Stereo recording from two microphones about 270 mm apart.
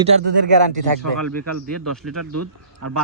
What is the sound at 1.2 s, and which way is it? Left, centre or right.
A man's voice, right.